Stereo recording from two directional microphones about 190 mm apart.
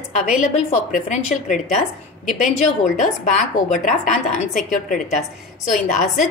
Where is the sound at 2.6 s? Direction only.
40° left (ahead or behind).